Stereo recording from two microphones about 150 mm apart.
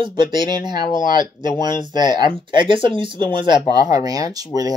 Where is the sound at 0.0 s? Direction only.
30° right (ahead or behind).